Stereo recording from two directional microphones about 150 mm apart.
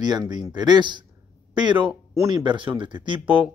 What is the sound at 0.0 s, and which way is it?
Speech, 25° right (ahead or behind).